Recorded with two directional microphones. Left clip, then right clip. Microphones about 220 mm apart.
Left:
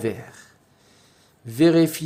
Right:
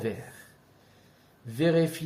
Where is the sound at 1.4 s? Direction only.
45° left (ahead or behind).